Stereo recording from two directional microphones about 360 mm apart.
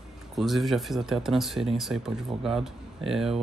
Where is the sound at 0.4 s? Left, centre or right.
Centre.